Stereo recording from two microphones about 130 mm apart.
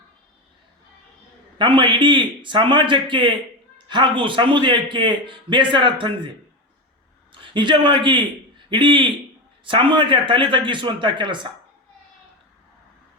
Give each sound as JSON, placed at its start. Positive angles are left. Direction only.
{"t": 1.5, "sound": "a man's voice", "side_deg": -40}
{"t": 7.3, "sound": "a man's voice", "side_deg": -35}